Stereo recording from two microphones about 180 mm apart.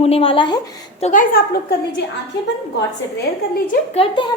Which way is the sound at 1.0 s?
45° left (ahead or behind).